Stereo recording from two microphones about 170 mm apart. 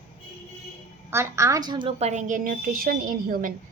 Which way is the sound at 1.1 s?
15° right (ahead or behind).